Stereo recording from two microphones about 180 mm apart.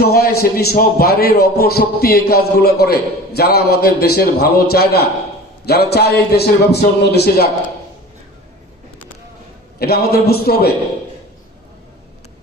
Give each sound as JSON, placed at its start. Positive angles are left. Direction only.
{"t": 0.0, "sound": "a man's voice", "side_deg": 60}
{"t": 9.7, "sound": "a man's voice", "side_deg": 60}